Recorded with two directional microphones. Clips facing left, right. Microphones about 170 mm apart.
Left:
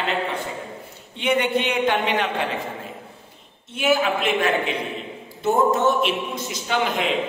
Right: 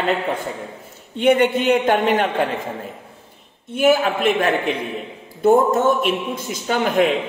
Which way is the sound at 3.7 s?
50° right (ahead or behind).